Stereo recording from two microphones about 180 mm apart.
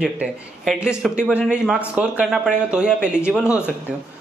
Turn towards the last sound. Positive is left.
turn(degrees=-5)  # may be behind; listen again after turning